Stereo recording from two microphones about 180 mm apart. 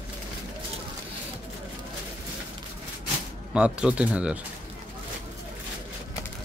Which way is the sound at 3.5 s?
5° right (ahead or behind).